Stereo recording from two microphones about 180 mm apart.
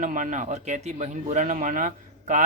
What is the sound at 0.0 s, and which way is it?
A man's voice, 45° right (ahead or behind).